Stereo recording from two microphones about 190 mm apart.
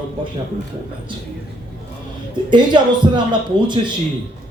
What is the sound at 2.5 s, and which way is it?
A man's voice, 25° right (ahead or behind).